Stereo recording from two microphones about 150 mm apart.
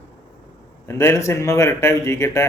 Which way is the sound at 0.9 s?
15° left (ahead or behind).